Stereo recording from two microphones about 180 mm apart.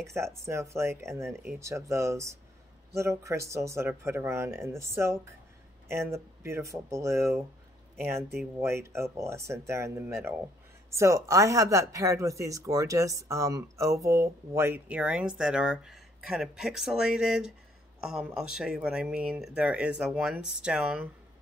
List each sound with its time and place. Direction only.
0.0 s speech: 15° right (ahead or behind)